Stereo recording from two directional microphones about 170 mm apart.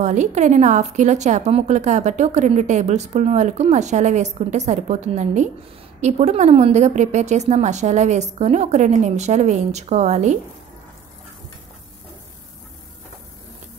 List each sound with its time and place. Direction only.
0.0 s a woman's voice: 45° right (ahead or behind)